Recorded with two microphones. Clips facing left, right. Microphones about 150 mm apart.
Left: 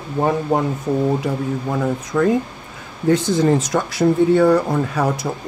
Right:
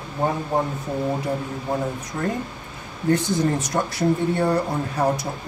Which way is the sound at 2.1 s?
90° left.